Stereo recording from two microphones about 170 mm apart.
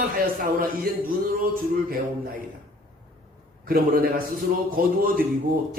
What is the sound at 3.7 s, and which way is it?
Speech, 60° right (ahead or behind).